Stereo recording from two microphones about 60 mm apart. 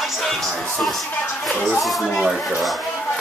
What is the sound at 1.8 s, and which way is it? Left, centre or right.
Speech, centre.